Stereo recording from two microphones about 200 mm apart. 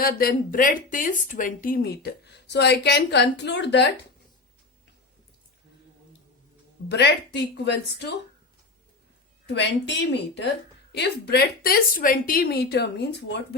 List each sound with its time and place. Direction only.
0.0 s speech: 50° left (ahead or behind)
6.8 s speech: 60° left (ahead or behind)
9.5 s speech: 55° left (ahead or behind)